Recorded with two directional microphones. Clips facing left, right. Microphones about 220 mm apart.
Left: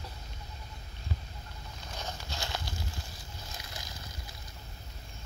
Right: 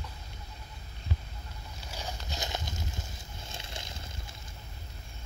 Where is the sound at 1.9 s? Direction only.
15° right (ahead or behind).